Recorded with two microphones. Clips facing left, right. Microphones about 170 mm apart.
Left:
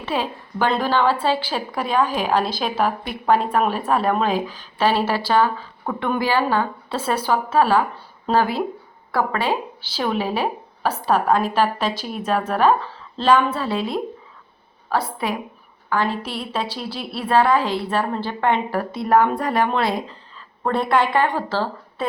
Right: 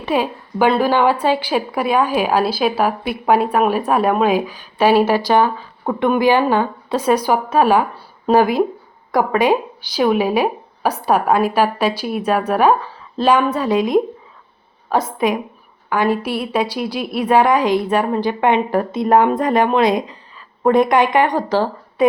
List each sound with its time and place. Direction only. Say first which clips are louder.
0.0 s a woman's voice: right 6 dB; 15° right (ahead or behind)